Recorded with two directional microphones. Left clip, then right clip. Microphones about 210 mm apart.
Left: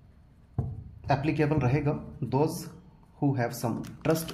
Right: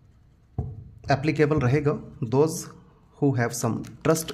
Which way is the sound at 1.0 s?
45° right (ahead or behind).